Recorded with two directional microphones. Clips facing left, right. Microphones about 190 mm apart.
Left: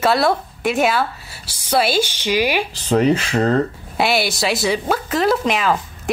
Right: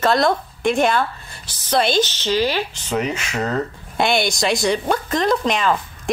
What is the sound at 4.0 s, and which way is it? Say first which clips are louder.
Speech: even; 5° left (ahead or behind).